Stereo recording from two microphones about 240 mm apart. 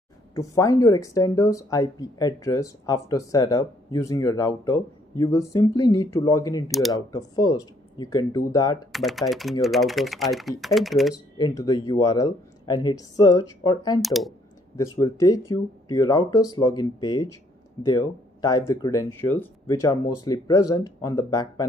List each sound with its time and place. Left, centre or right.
0.3 s speech: centre
8.9 s speech: centre
11.3 s speech: centre
14.0 s speech: centre
14.8 s speech: centre